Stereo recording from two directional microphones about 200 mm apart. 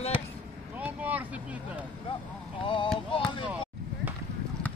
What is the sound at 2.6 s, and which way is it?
Speech, 25° left (ahead or behind).